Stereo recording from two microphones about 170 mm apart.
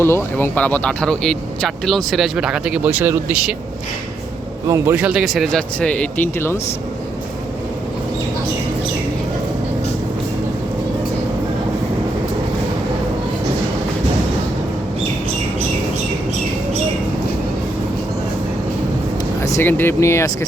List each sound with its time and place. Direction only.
0.0 s speech: 15° left (ahead or behind); by 3.5 s 10° right (ahead or behind)
4.7 s speech: 15° right (ahead or behind); by 6.6 s 15° left (ahead or behind)
19.4 s speech: 15° left (ahead or behind)